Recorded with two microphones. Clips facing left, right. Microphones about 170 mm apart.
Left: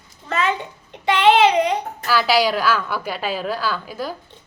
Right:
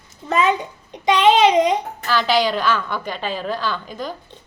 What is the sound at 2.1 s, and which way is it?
A woman's voice, 10° left (ahead or behind).